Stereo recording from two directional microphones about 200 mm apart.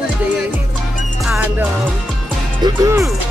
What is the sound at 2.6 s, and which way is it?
Speech, 20° right (ahead or behind).